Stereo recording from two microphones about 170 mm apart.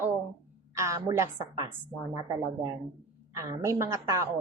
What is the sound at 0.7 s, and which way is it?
A woman's voice, 15° right (ahead or behind).